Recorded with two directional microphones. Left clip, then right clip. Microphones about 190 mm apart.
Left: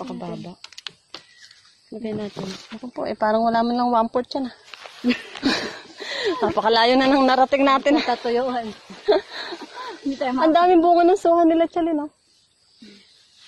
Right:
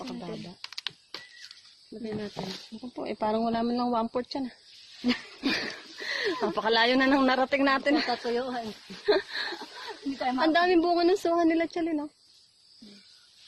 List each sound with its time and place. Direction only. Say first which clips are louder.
0.6 s typing: even; 20° right (ahead or behind)
2.0 s a woman's voice: left 6 dB; centre (ahead or behind)
9.0 s a sound: left 6 dB; 5° right (ahead or behind)
10.4 s a woman's voice: left 8 dB; centre (ahead or behind)